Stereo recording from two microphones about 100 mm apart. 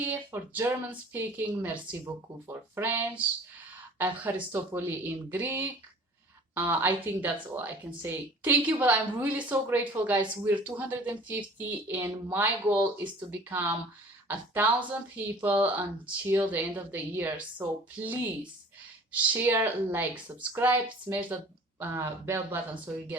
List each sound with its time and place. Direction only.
0.0 s speech: 20° right (ahead or behind)
14.3 s speech: 15° right (ahead or behind)